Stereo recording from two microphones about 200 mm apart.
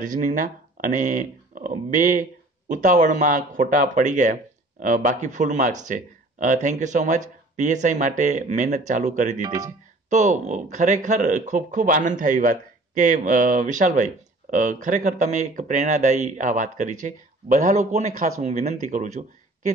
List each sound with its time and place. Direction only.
0.0 s speech: 40° right (ahead or behind)